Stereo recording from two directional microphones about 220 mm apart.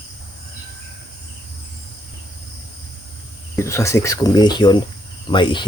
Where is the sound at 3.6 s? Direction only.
15° left (ahead or behind).